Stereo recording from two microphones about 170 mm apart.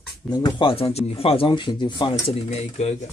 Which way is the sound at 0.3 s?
25° left (ahead or behind).